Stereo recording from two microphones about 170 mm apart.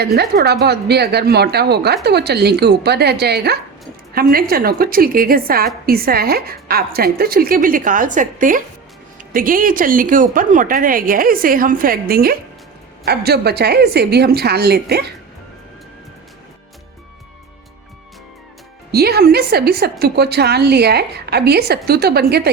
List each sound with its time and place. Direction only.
0.0 s a woman's voice: 70° right (ahead or behind)
4.1 s a woman's voice: 60° right (ahead or behind)
18.9 s a woman's voice: 65° right (ahead or behind)